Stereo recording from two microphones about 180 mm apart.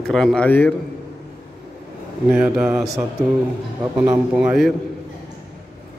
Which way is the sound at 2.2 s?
5° right (ahead or behind).